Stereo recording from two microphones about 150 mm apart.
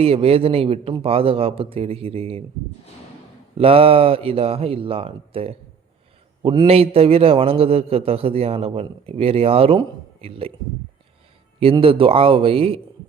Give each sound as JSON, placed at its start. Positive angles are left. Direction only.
{"t": 0.0, "sound": "a man's voice", "side_deg": -40}
{"t": 3.6, "sound": "a man's voice", "side_deg": -40}
{"t": 11.6, "sound": "a man's voice", "side_deg": -40}